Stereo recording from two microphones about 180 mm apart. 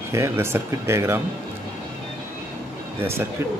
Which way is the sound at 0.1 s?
15° right (ahead or behind).